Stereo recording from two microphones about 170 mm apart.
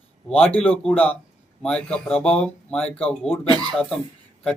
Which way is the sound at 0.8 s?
5° left (ahead or behind).